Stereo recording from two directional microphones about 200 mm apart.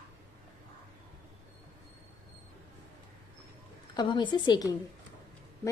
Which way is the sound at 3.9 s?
25° left (ahead or behind).